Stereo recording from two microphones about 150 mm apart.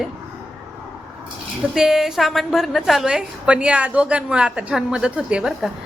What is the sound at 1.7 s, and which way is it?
A woman's voice, centre (ahead or behind).